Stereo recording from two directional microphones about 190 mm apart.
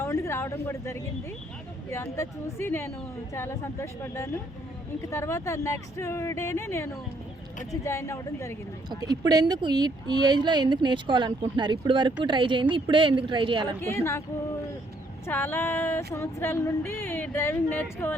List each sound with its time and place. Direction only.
0.0 s a sound: 15° left (ahead or behind)
1.9 s speech: 15° left (ahead or behind)
9.0 s speech: 20° right (ahead or behind)
13.8 s speech: 15° left (ahead or behind)
15.3 s speech: 10° left (ahead or behind)